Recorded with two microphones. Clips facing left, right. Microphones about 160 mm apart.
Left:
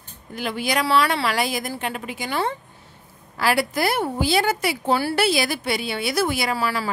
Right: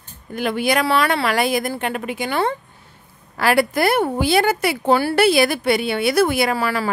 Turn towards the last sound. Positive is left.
turn(degrees=-55)  # may be behind; listen again after turning